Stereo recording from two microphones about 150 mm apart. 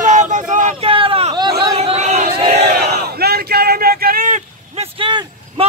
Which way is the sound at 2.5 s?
90° right.